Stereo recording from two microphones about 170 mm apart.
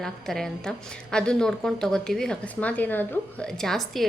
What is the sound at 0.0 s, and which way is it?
A woman's voice, 5° left (ahead or behind).